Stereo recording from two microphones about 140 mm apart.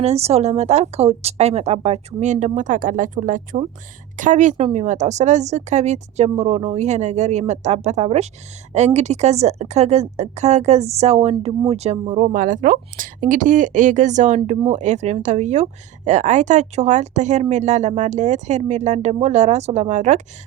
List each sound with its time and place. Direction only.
0.0 s a woman's voice: 50° right (ahead or behind)